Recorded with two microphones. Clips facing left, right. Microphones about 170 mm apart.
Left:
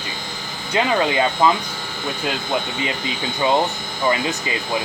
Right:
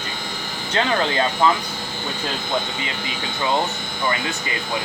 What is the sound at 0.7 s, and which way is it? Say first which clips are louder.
Speech: left 2 dB; 15° left (ahead or behind).